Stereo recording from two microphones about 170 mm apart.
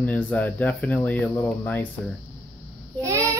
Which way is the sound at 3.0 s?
20° right (ahead or behind).